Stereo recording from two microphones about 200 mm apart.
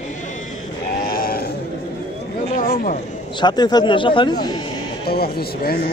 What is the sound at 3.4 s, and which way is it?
A man's voice, 20° left (ahead or behind).